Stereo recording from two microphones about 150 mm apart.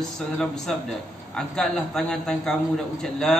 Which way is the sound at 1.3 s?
5° left (ahead or behind).